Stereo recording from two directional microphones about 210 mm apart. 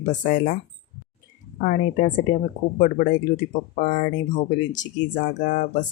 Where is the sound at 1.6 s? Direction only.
40° left (ahead or behind).